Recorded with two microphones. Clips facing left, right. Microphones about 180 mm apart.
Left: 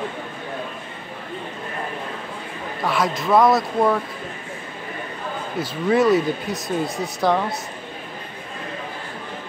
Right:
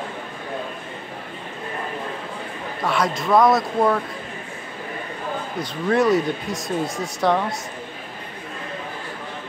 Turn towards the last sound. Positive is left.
turn(degrees=0)  # may be behind; listen again after turning